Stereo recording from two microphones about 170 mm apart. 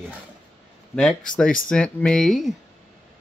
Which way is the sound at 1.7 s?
5° left (ahead or behind).